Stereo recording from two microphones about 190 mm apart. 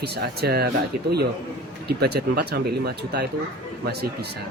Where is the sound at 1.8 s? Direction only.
55° right (ahead or behind).